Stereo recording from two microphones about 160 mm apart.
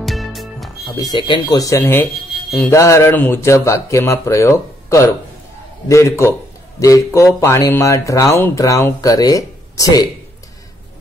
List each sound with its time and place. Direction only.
0.0 s music: centre (ahead or behind)
1.1 s speech: 25° left (ahead or behind)